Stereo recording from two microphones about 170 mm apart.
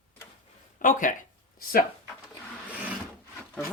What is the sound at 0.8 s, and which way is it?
Speech, 50° left (ahead or behind).